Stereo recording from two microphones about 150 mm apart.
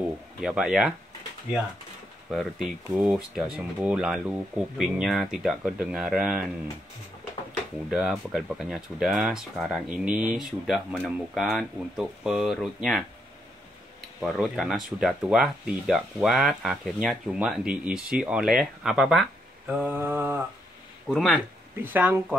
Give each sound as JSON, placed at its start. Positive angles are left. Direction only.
{"t": 0.4, "sound": "speech", "side_deg": -5}
{"t": 2.3, "sound": "speech", "side_deg": 0}
{"t": 7.9, "sound": "speech", "side_deg": -5}
{"t": 14.2, "sound": "speech", "side_deg": 0}
{"t": 19.8, "sound": "mantra", "side_deg": -15}
{"t": 21.1, "sound": "speech", "side_deg": 5}
{"t": 21.8, "sound": "mantra", "side_deg": -10}